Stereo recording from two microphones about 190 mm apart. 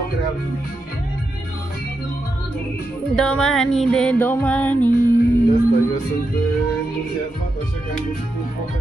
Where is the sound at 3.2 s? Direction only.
5° left (ahead or behind).